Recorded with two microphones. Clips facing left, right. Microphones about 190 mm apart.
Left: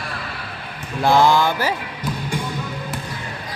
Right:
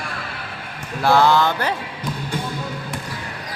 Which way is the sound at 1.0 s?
15° left (ahead or behind).